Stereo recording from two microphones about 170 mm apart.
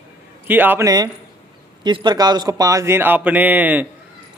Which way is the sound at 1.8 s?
25° right (ahead or behind).